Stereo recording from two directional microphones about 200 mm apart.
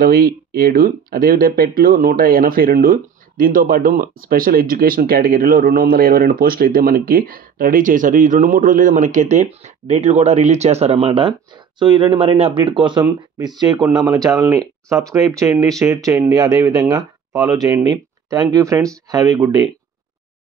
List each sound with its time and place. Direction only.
0.0 s speech: 50° right (ahead or behind); by 19.7 s 20° right (ahead or behind)